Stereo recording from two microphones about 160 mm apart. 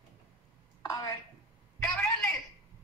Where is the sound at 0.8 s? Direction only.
25° left (ahead or behind).